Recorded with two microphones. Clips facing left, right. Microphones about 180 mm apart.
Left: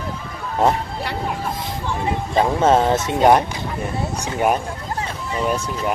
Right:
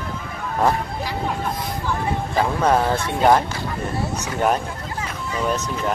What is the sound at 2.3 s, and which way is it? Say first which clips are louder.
Speech: left 3 dB; 25° left (ahead or behind).